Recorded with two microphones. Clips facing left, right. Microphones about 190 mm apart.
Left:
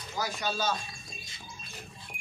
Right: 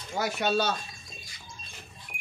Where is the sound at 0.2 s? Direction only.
65° right (ahead or behind).